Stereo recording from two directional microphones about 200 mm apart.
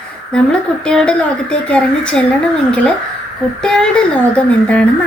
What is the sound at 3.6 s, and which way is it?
A woman's voice, 5° left (ahead or behind).